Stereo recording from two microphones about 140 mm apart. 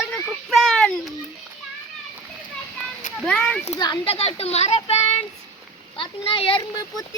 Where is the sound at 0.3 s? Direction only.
Centre (ahead or behind).